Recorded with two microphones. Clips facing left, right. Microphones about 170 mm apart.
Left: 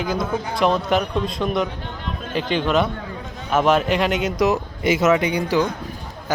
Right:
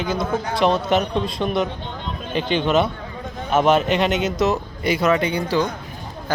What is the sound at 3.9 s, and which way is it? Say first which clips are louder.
Speech: right 1 dB; 5° left (ahead or behind).